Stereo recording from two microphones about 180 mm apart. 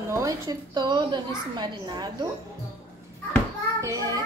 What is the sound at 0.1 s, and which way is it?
A woman's voice, 20° right (ahead or behind).